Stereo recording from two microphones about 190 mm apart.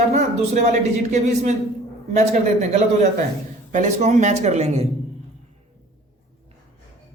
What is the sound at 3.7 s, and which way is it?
Speech, 40° right (ahead or behind).